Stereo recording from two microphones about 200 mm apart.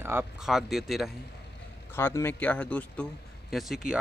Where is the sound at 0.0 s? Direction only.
10° right (ahead or behind).